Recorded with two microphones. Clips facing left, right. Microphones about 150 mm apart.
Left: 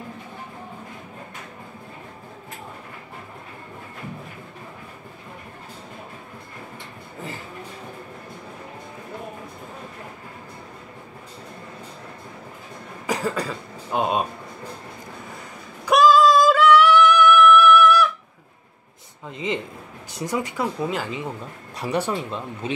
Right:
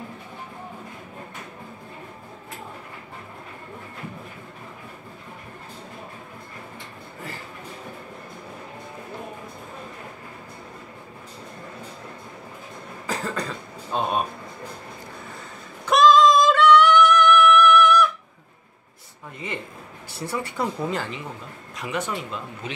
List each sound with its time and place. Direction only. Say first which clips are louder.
13.0 s cough: left 4 dB; 10° left (ahead or behind)
15.8 s yodeling: even; 10° left (ahead or behind)
19.3 s a sound: left 6 dB; 20° left (ahead or behind)
20.1 s speech: left 3 dB; 15° left (ahead or behind)
20.5 s speech: left 1 dB; 5° left (ahead or behind)
21.7 s speech: left 4 dB; 35° left (ahead or behind)